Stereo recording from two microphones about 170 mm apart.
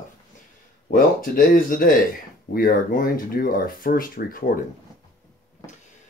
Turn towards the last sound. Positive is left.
turn(degrees=55)  # may be behind; listen again after turning